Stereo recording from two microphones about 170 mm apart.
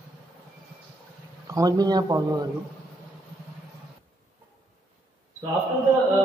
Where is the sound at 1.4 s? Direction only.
20° right (ahead or behind).